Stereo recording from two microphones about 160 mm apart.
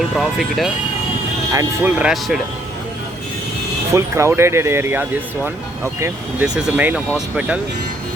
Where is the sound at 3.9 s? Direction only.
15° right (ahead or behind).